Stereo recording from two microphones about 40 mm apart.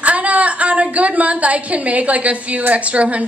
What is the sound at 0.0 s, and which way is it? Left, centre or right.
A woman's voice, right.